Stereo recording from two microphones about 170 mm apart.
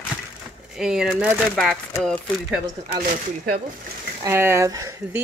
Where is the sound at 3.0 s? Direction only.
55° right (ahead or behind).